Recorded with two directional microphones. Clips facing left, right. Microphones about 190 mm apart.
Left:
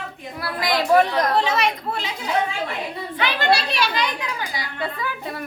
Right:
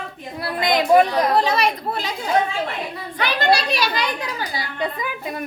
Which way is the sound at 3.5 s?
40° right (ahead or behind).